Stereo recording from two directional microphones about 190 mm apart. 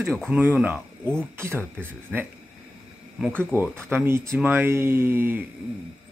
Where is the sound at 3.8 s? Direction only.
10° right (ahead or behind).